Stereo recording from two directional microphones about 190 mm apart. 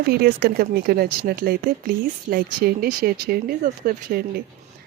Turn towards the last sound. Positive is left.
turn(degrees=-50)  # may be behind; listen again after turning